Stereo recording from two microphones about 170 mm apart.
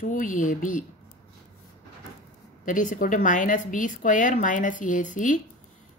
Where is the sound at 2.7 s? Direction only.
50° left (ahead or behind).